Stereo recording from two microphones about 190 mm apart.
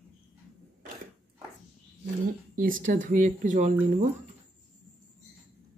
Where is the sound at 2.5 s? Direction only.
45° right (ahead or behind).